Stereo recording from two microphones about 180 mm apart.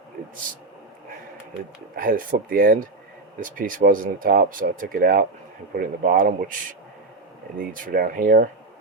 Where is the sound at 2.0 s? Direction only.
50° right (ahead or behind).